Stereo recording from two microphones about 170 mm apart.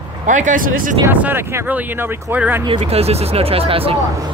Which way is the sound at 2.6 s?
35° right (ahead or behind).